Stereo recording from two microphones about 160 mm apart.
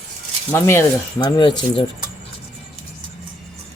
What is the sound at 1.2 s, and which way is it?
Speech, 30° left (ahead or behind).